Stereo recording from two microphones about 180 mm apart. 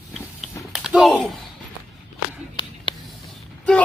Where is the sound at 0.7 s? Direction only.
5° right (ahead or behind).